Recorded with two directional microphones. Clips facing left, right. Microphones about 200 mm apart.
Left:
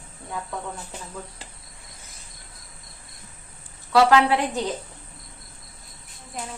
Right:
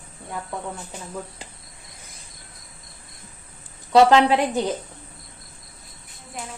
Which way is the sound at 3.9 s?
20° right (ahead or behind).